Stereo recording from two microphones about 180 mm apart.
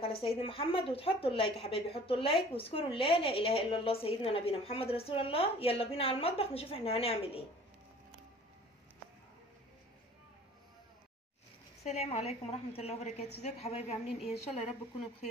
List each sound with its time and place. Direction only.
0.0 s a sound: 30° left (ahead or behind)
0.4 s speech: 30° left (ahead or behind)
11.8 s speech: 40° left (ahead or behind)